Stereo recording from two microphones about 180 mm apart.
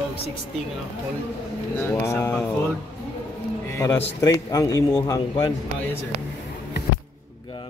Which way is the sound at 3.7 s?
15° left (ahead or behind).